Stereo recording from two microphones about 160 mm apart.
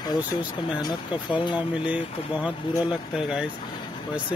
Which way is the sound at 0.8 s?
30° left (ahead or behind).